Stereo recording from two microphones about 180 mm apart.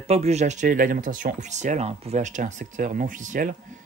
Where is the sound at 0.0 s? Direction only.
35° right (ahead or behind).